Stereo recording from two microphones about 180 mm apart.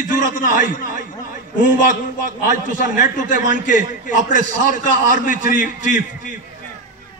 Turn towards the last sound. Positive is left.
turn(degrees=45)  # may be behind; listen again after turning